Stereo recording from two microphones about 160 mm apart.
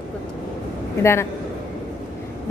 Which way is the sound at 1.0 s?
15° left (ahead or behind).